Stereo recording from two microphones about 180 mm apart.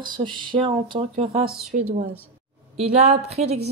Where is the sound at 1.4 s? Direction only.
45° right (ahead or behind).